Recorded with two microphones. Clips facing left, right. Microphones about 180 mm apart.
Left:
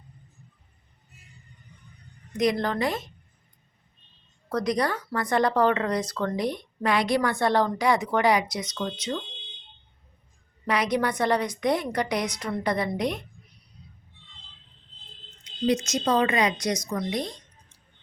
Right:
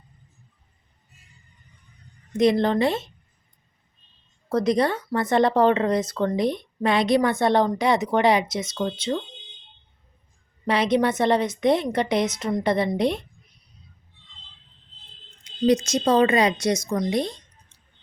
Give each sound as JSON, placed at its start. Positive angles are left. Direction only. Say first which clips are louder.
{"t": 2.4, "sound": "speech", "louder": "right 5 dB", "side_deg": -25}
{"t": 4.4, "sound": "speech", "louder": "right 5 dB", "side_deg": -25}
{"t": 10.7, "sound": "speech", "louder": "right 4 dB", "side_deg": -25}
{"t": 15.6, "sound": "speech", "louder": "right 5 dB", "side_deg": -35}
{"t": 17.1, "sound": "a sound", "louder": "right 5 dB", "side_deg": -25}